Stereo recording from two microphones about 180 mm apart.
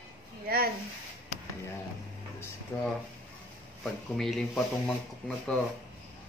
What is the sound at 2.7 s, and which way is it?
Speech, 10° left (ahead or behind).